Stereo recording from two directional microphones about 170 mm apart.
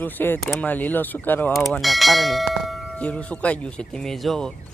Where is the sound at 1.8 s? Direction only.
Centre (ahead or behind).